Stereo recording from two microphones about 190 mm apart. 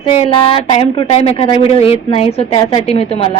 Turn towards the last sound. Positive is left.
turn(degrees=30)  # may be behind; listen again after turning